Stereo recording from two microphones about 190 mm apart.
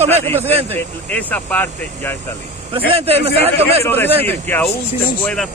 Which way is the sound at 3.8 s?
10° left (ahead or behind).